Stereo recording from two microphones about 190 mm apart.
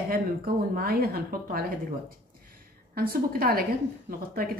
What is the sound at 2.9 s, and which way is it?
A woman's voice, 50° right (ahead or behind).